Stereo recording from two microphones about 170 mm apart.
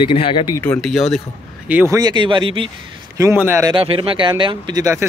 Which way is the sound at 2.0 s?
25° right (ahead or behind).